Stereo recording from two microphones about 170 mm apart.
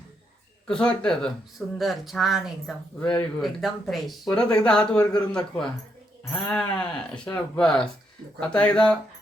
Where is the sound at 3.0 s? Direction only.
25° left (ahead or behind).